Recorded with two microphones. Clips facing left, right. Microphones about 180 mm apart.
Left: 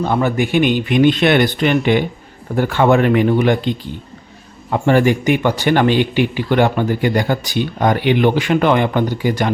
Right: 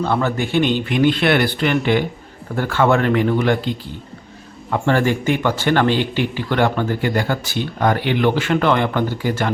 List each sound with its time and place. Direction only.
0.0 s speech: 15° left (ahead or behind)